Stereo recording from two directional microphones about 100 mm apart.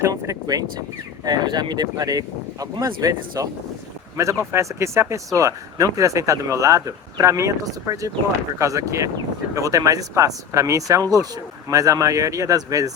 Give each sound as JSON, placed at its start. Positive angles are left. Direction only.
{"t": 0.0, "sound": "speech", "side_deg": -35}